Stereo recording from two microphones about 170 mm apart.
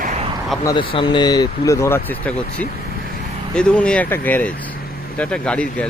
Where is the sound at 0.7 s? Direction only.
30° left (ahead or behind).